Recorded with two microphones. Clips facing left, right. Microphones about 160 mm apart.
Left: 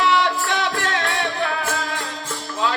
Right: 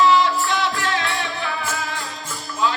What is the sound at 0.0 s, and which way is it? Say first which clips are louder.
Music: right 3 dB; 65° left (ahead or behind).